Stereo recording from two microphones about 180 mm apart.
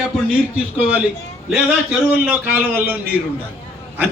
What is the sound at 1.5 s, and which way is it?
A man's voice, 5° right (ahead or behind).